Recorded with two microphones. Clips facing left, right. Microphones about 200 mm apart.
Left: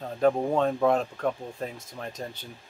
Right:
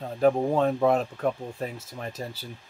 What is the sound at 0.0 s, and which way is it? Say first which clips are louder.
Speech: right 1 dB; 5° right (ahead or behind).